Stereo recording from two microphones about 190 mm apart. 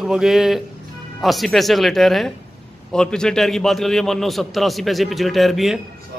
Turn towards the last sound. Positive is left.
turn(degrees=0)  # may be behind; listen again after turning